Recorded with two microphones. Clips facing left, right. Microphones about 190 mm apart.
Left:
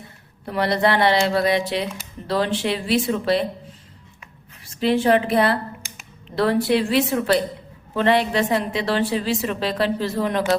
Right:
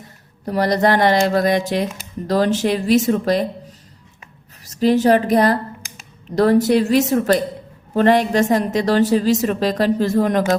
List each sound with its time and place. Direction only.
0.4 s a woman's voice: 40° right (ahead or behind)